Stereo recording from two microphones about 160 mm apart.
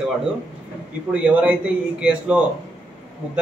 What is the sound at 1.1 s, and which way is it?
Speech, 5° right (ahead or behind).